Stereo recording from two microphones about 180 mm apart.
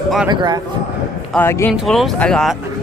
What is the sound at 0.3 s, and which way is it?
Speech, 25° right (ahead or behind).